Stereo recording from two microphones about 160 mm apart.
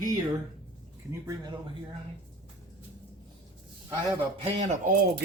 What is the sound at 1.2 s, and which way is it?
Speech, 20° right (ahead or behind).